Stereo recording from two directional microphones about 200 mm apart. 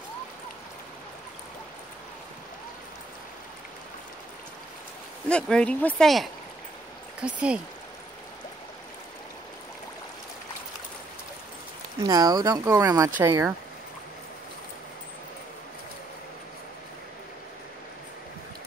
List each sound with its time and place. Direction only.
5.3 s speech: 5° left (ahead or behind)
12.0 s speech: 20° right (ahead or behind)